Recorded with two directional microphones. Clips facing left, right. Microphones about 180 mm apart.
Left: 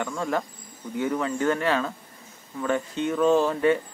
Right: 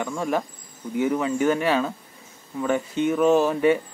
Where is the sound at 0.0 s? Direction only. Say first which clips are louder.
Right 2 dB; 10° right (ahead or behind).